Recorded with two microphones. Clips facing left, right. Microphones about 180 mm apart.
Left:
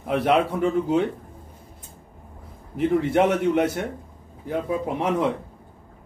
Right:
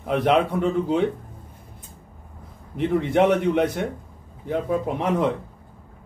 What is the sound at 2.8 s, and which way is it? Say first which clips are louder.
A man's voice: even; 5° left (ahead or behind).